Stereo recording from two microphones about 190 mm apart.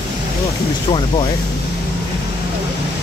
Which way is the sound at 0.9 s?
25° left (ahead or behind).